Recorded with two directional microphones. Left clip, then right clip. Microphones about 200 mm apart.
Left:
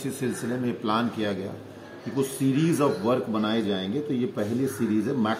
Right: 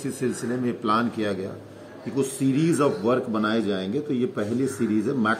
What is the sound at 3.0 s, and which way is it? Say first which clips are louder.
Speech: right 2 dB; 5° left (ahead or behind).